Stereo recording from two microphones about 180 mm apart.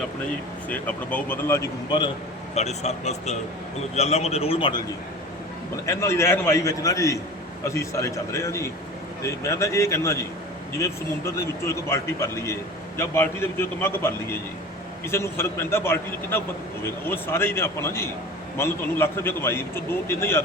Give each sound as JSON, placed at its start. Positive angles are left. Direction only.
{"t": 0.7, "sound": "a man's voice", "side_deg": 10}
{"t": 2.6, "sound": "a man's voice", "side_deg": 40}
{"t": 5.8, "sound": "a man's voice", "side_deg": 15}